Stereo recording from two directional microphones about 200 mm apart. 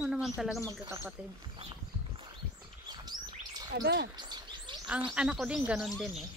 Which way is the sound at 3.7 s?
55° right (ahead or behind).